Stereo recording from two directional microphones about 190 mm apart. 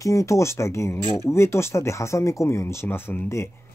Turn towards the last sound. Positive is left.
turn(degrees=15)  # may be behind; listen again after turning